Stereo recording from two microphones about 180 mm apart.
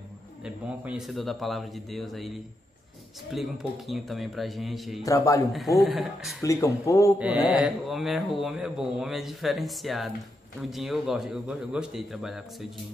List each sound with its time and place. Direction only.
0.4 s speech: 5° right (ahead or behind)
5.0 s speech: 20° left (ahead or behind)
5.5 s speech: centre (ahead or behind)
6.4 s speech: 15° left (ahead or behind)
7.2 s speech: 5° right (ahead or behind)